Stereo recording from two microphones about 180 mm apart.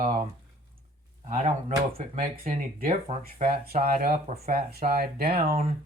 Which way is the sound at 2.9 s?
35° right (ahead or behind).